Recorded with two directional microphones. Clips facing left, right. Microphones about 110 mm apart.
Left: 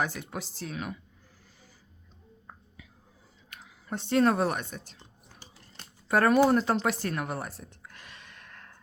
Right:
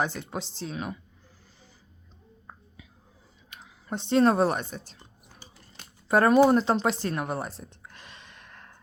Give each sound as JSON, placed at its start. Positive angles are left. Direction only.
{"t": 0.0, "sound": "speech", "side_deg": -25}
{"t": 3.5, "sound": "speech", "side_deg": -25}
{"t": 4.9, "sound": "a sound", "side_deg": -10}
{"t": 6.1, "sound": "speech", "side_deg": -25}